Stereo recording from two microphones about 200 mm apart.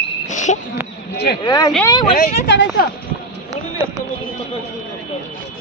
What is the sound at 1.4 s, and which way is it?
Speech, 15° left (ahead or behind).